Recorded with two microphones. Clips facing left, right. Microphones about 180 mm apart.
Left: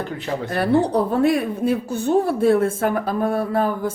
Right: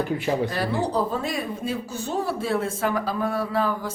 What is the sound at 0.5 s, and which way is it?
A woman's voice, 60° left (ahead or behind).